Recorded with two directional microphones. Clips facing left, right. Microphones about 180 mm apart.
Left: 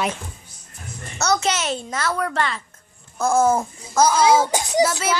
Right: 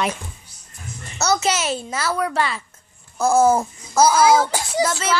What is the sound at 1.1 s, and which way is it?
Speech, 5° right (ahead or behind).